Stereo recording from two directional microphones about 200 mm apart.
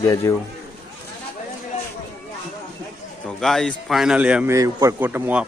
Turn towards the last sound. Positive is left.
turn(degrees=-10)  # may be behind; listen again after turning